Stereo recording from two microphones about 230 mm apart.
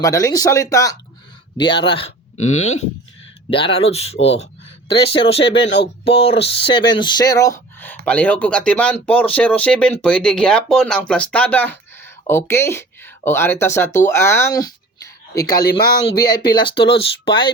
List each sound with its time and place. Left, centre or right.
0.0 s speech: centre
2.5 s speech: left
3.5 s speech: left